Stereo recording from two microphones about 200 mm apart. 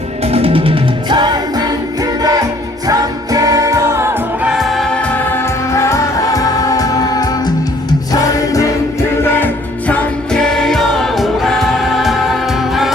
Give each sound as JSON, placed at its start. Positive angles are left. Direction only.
{"t": 0.3, "sound": "music", "side_deg": -30}
{"t": 4.5, "sound": "music", "side_deg": 0}
{"t": 5.7, "sound": "music", "side_deg": 15}